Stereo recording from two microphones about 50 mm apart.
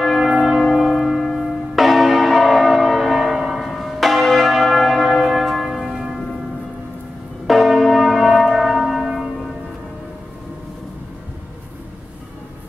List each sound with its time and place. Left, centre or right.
0.0 s church bell: centre
7.4 s church bell: centre